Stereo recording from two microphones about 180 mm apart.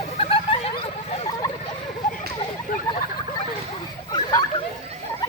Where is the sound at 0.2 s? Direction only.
35° left (ahead or behind).